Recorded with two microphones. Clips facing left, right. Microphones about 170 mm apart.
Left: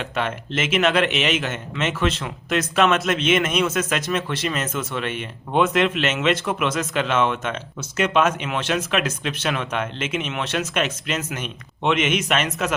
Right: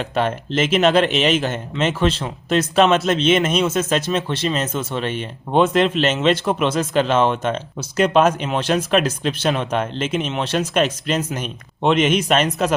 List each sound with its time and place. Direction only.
0.0 s speech: 35° right (ahead or behind)